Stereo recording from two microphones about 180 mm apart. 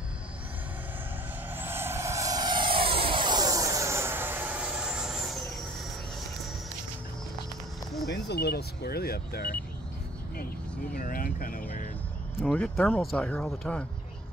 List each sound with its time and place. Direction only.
1.5 s vehicle: 10° right (ahead or behind)
8.1 s speech: 65° left (ahead or behind)
11.0 s speech: 55° left (ahead or behind)
12.4 s speech: 5° left (ahead or behind)